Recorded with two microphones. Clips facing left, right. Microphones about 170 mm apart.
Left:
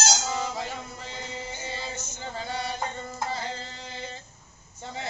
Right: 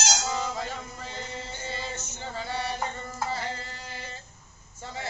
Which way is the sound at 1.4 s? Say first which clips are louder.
Left 1 dB; 10° left (ahead or behind).